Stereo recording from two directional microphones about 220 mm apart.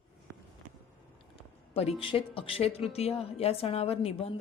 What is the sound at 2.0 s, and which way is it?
A woman's voice, 25° left (ahead or behind).